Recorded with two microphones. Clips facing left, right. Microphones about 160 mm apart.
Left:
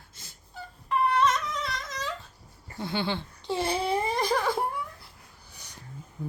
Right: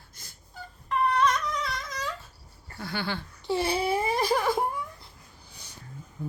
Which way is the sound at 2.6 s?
20° left (ahead or behind).